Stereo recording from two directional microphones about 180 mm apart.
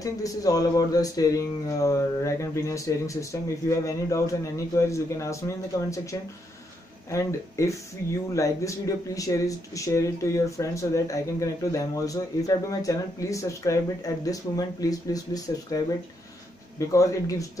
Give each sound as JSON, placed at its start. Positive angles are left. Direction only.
{"t": 0.0, "sound": "speech", "side_deg": 20}